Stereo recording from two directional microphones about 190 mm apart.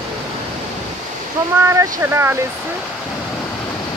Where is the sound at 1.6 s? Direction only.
15° right (ahead or behind).